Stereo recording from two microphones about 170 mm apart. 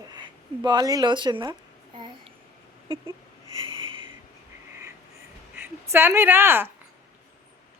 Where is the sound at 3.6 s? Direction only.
30° right (ahead or behind).